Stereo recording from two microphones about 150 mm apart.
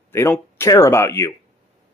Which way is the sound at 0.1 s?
15° left (ahead or behind).